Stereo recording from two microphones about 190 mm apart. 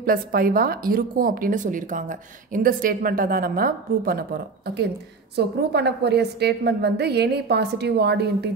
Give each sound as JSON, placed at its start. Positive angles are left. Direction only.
{"t": 0.0, "sound": "a woman's voice", "side_deg": -50}
{"t": 5.3, "sound": "a woman's voice", "side_deg": -60}